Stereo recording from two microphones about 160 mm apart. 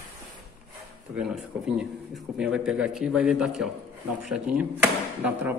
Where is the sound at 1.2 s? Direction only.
5° right (ahead or behind).